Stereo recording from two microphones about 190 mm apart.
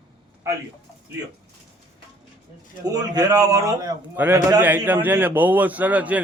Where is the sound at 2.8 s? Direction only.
20° right (ahead or behind).